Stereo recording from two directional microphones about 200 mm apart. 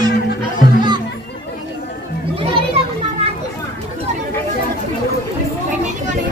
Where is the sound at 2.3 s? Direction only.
30° right (ahead or behind).